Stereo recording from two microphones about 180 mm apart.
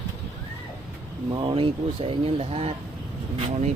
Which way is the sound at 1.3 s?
25° right (ahead or behind).